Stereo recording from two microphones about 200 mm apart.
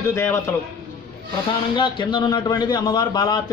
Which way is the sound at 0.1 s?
15° left (ahead or behind).